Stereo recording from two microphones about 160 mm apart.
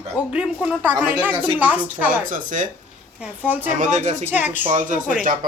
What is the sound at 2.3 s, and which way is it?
Speech, 55° right (ahead or behind).